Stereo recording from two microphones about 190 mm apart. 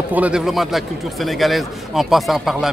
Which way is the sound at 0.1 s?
5° right (ahead or behind).